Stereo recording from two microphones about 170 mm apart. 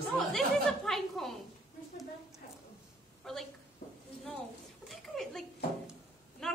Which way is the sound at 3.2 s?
5° left (ahead or behind).